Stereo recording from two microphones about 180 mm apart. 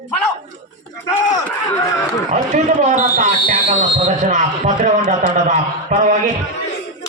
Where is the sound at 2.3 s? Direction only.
40° right (ahead or behind).